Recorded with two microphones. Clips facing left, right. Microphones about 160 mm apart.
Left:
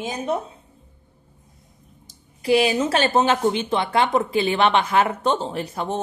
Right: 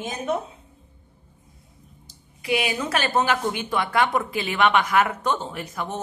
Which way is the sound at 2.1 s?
35° left (ahead or behind).